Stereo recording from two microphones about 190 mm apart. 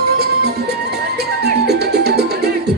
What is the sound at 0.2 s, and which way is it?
Music, 60° right (ahead or behind).